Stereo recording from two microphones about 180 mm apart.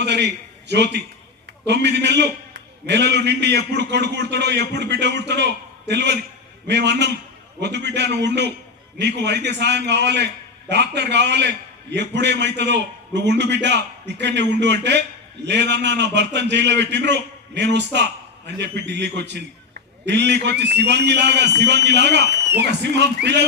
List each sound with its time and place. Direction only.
0.0 s a man's voice: 70° right (ahead or behind)